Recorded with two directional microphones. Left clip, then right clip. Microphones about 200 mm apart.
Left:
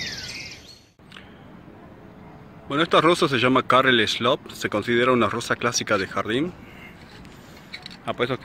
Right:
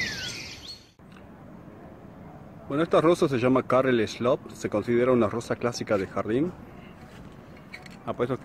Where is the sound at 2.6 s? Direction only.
5° right (ahead or behind).